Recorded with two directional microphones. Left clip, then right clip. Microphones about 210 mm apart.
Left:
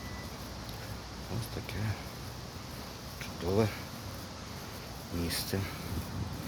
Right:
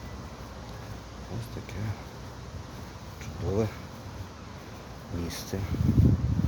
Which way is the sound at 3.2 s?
5° left (ahead or behind).